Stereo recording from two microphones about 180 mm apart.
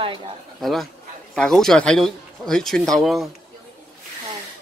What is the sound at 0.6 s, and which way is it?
Speech, centre (ahead or behind).